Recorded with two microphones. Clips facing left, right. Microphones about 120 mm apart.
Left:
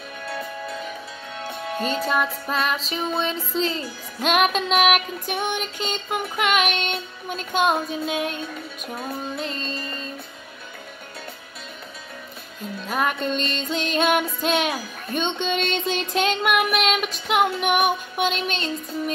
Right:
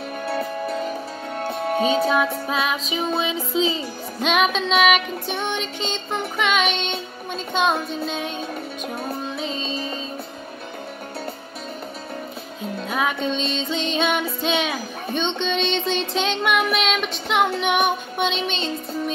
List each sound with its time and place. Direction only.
0.2 s music: 30° right (ahead or behind)
2.0 s music: centre (ahead or behind)
12.8 s music: centre (ahead or behind)